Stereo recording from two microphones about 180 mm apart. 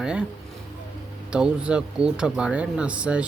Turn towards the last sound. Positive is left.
turn(degrees=-5)  # may be behind; listen again after turning